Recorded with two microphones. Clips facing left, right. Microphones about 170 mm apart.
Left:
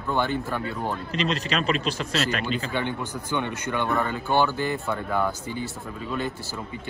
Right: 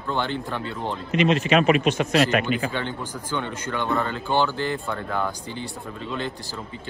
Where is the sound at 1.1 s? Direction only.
35° left (ahead or behind).